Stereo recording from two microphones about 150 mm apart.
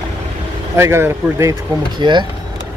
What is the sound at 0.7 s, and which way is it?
Speech, 15° right (ahead or behind).